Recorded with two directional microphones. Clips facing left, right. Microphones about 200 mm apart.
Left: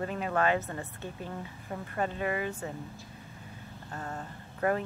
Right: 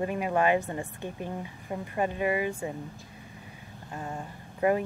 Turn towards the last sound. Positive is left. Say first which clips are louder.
# right 4 dB
turn(degrees=-15)  # may be behind; listen again after turning